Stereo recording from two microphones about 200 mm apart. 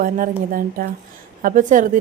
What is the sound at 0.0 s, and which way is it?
A woman's voice, 45° right (ahead or behind).